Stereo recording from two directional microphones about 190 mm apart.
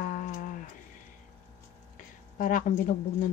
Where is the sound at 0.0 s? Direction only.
50° left (ahead or behind).